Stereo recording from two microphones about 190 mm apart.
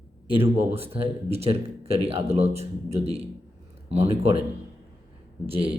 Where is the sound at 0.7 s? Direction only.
30° right (ahead or behind).